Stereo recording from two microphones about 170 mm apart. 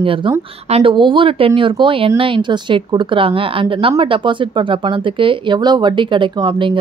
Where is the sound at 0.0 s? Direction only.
30° right (ahead or behind).